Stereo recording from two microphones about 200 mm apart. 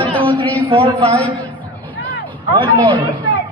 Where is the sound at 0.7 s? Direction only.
25° right (ahead or behind).